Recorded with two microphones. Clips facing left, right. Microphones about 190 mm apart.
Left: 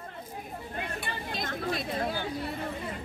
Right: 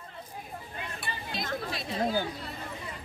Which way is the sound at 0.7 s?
55° left (ahead or behind).